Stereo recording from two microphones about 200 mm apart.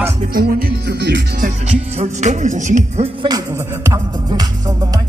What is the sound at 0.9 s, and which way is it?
Speech, 60° right (ahead or behind).